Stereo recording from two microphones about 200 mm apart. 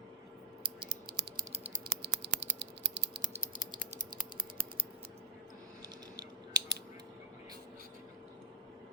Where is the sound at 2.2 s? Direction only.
60° right (ahead or behind).